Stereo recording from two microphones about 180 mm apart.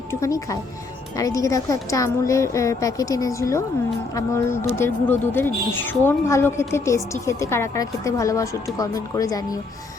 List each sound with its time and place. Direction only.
0.1 s a woman's voice: 15° left (ahead or behind)